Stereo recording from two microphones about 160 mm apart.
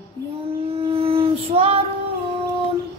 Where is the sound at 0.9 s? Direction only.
35° right (ahead or behind).